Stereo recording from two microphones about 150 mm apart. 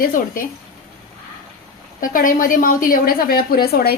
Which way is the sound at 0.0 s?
70° left (ahead or behind).